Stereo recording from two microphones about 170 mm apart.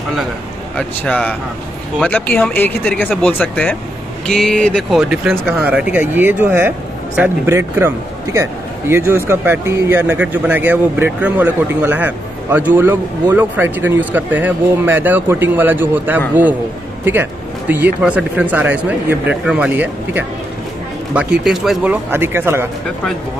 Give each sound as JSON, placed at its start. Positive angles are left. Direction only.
{"t": 0.7, "sound": "a man's voice", "side_deg": 5}